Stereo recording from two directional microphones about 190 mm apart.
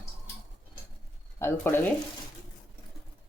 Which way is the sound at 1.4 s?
10° left (ahead or behind).